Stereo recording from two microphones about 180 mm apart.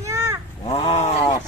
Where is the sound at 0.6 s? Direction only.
30° left (ahead or behind).